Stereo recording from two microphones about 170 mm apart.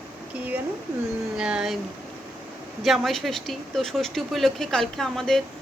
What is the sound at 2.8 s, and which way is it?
A woman's voice, centre (ahead or behind).